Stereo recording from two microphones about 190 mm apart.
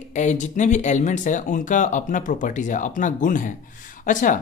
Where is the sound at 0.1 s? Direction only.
40° left (ahead or behind).